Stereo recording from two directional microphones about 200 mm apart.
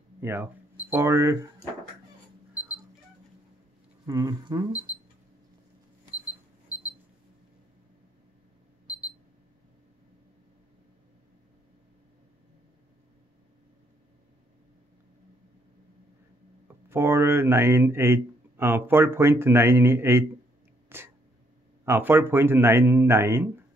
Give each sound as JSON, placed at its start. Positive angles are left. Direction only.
{"t": 0.2, "sound": "speech", "side_deg": -10}
{"t": 4.0, "sound": "speech", "side_deg": -15}
{"t": 16.6, "sound": "speech", "side_deg": -10}
{"t": 20.9, "sound": "sneeze", "side_deg": -10}
{"t": 21.8, "sound": "speech", "side_deg": -10}